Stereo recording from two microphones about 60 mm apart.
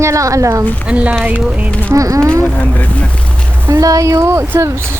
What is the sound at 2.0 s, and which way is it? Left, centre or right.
Speech, right.